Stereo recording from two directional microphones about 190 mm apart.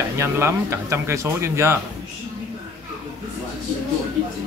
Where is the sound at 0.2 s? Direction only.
15° right (ahead or behind).